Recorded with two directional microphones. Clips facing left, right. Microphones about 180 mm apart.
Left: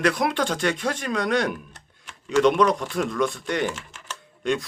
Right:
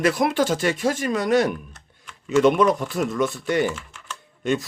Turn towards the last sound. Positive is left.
turn(degrees=0)  # may be behind; listen again after turning